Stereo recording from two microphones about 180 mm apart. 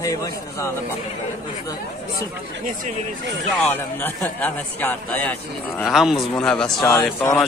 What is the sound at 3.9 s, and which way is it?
Speech, 10° left (ahead or behind).